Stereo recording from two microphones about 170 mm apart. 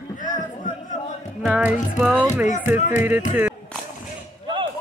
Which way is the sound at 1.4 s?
5° right (ahead or behind).